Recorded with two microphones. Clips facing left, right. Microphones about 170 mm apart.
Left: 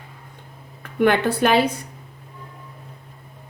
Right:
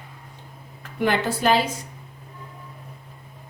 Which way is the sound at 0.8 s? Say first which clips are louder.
Left 5 dB; 60° left (ahead or behind).